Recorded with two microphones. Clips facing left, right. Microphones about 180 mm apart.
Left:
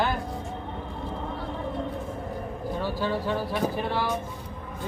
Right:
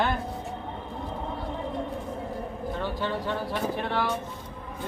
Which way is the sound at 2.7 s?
5° left (ahead or behind).